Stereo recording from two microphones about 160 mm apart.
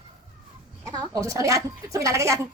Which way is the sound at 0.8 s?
20° right (ahead or behind).